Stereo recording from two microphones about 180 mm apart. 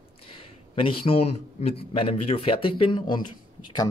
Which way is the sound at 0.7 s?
30° left (ahead or behind).